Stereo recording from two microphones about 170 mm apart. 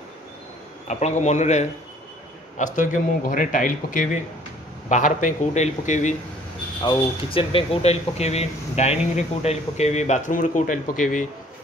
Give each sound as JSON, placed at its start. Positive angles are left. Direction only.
{"t": 0.8, "sound": "speech", "side_deg": 40}
{"t": 6.8, "sound": "speech", "side_deg": 30}